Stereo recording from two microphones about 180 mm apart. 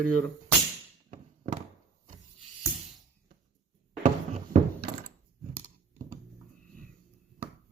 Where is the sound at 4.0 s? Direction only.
45° right (ahead or behind).